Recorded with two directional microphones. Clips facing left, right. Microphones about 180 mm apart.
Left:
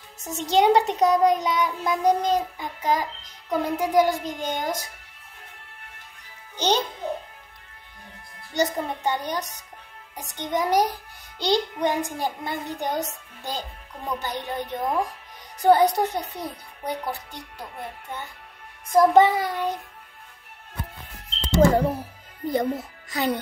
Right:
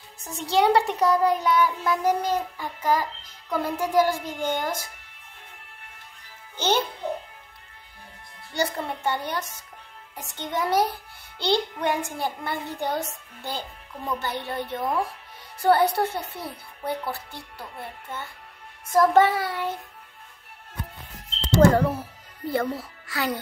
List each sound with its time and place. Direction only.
0.3 s a child's voice: 20° left (ahead or behind)
6.5 s a child's voice: 15° left (ahead or behind)
8.5 s a child's voice: 20° left (ahead or behind)
21.5 s a child's voice: 15° left (ahead or behind)